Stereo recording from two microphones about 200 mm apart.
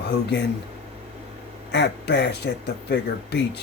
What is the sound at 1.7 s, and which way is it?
Speech, 60° left (ahead or behind).